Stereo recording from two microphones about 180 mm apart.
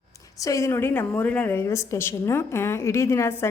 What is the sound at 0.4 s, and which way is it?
A woman's voice, 15° left (ahead or behind).